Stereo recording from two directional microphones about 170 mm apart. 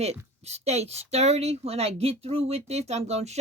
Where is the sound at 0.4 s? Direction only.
40° right (ahead or behind).